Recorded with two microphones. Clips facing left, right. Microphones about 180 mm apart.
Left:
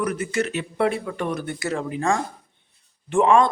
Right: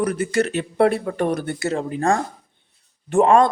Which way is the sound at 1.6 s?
25° right (ahead or behind).